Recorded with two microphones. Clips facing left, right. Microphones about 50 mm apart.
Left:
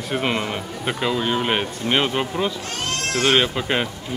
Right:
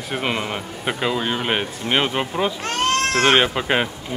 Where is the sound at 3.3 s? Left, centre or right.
Centre.